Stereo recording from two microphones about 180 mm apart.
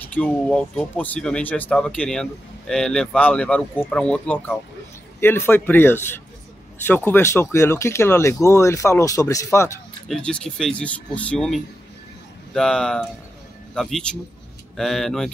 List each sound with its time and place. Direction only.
0.1 s speech: 5° left (ahead or behind)
10.0 s speech: 5° left (ahead or behind)